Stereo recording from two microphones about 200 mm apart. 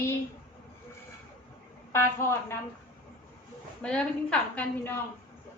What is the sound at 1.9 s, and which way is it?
Speech, 10° left (ahead or behind).